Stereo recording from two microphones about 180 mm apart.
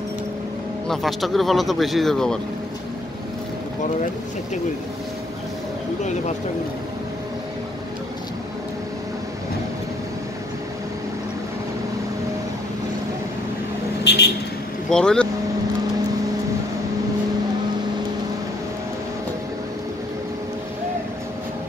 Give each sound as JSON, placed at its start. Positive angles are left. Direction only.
{"t": 0.8, "sound": "speech", "side_deg": 0}
{"t": 14.0, "sound": "vehicle", "side_deg": 65}
{"t": 14.9, "sound": "speech", "side_deg": 5}